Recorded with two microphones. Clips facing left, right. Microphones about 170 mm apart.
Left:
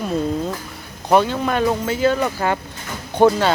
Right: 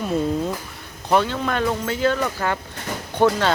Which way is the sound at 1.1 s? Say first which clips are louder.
Left 3 dB; 15° left (ahead or behind).